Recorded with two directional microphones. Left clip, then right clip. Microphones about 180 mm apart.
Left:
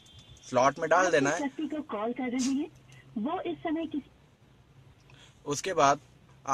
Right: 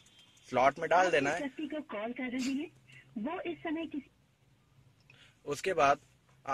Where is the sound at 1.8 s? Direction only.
30° left (ahead or behind).